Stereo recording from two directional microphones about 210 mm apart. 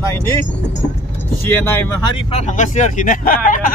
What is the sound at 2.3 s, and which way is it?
Speech, 35° left (ahead or behind).